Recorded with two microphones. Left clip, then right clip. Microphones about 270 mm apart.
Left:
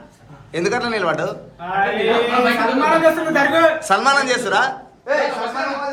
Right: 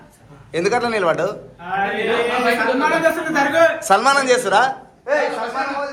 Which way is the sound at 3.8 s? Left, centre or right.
Centre.